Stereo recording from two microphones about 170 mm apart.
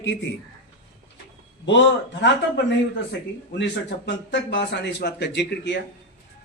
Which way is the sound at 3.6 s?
90° left.